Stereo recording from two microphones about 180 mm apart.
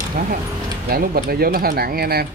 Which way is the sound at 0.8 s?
60° right (ahead or behind).